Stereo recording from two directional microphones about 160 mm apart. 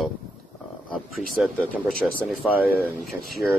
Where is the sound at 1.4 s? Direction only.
5° right (ahead or behind).